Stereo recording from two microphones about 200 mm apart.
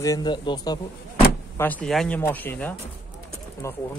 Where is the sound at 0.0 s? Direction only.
20° left (ahead or behind).